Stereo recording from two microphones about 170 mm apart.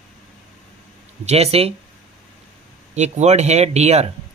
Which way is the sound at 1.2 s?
35° right (ahead or behind).